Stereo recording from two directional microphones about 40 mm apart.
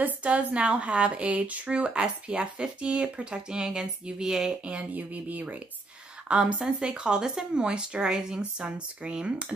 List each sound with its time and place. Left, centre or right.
0.0 s speech: right; by 4.6 s centre
4.9 s speech: right
6.2 s speech: right